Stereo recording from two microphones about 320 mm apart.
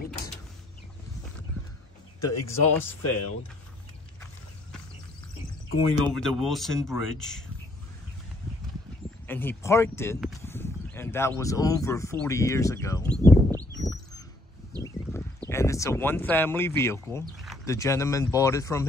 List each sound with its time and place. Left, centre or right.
2.1 s speech: centre
3.1 s speech: left
6.1 s speech: centre
9.3 s speech: centre
14.8 s a sound: centre
17.6 s speech: centre